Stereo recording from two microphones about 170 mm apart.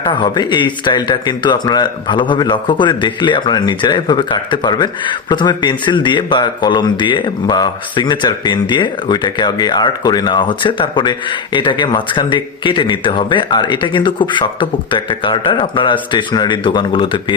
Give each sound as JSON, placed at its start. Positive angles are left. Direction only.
{"t": 0.0, "sound": "speech", "side_deg": 25}